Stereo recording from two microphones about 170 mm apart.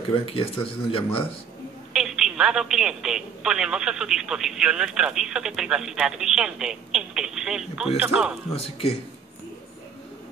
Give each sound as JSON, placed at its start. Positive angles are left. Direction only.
{"t": 0.2, "sound": "speech", "side_deg": 35}
{"t": 2.0, "sound": "speech", "side_deg": 0}
{"t": 8.5, "sound": "speech", "side_deg": 35}